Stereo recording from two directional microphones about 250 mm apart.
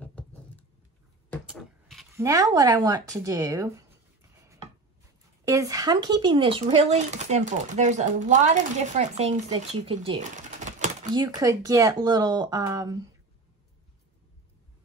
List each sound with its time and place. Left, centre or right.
0.0 s a sound: centre
2.2 s speech: centre
5.4 s speech: centre; by 11.1 s right
11.1 s speech: centre